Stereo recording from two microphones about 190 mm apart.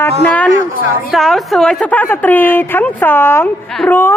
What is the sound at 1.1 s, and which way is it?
A woman's voice, centre (ahead or behind).